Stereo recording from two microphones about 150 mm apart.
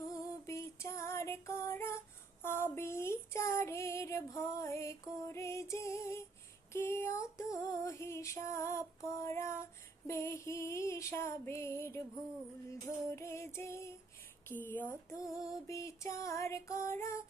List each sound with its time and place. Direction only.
0.4 s female singing: 20° left (ahead or behind)
5.2 s music: 20° left (ahead or behind)
6.7 s female singing: 15° left (ahead or behind)